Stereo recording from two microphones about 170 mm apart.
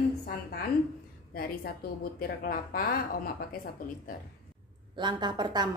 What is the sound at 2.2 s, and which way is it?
A woman's voice, 60° left (ahead or behind).